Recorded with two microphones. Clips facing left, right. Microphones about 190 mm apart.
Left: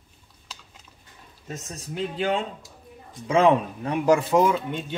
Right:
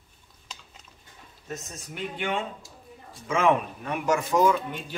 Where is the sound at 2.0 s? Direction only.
35° left (ahead or behind).